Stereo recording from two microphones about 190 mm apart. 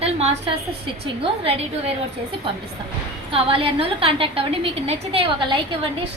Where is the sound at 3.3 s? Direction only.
30° right (ahead or behind).